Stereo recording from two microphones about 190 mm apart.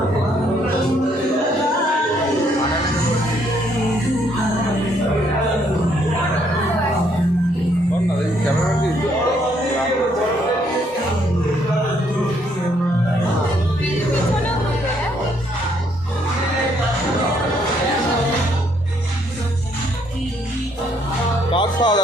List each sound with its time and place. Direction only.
21.5 s music: 25° left (ahead or behind)